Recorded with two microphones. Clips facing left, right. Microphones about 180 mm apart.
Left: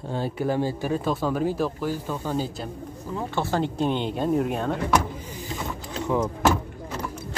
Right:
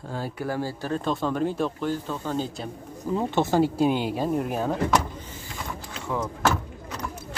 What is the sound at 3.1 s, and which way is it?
Speech, 20° right (ahead or behind).